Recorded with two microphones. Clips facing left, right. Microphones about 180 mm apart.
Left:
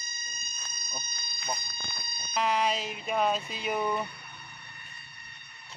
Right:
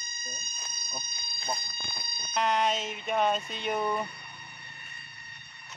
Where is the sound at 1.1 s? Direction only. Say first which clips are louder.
Right 1 dB; 30° right (ahead or behind).